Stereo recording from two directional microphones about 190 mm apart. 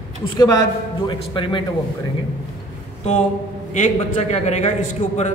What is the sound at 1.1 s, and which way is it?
Speech, 25° left (ahead or behind).